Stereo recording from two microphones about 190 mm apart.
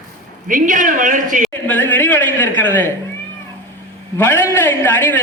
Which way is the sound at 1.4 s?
10° left (ahead or behind).